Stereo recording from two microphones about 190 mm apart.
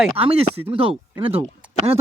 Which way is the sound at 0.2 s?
30° right (ahead or behind).